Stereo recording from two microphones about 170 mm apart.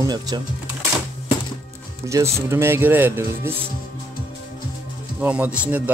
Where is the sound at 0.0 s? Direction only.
25° right (ahead or behind).